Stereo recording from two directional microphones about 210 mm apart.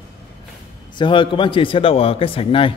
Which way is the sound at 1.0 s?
25° left (ahead or behind).